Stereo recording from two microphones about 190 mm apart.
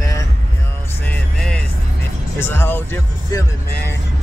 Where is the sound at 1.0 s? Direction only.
5° left (ahead or behind).